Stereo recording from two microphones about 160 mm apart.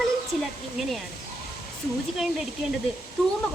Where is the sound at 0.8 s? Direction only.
Centre (ahead or behind).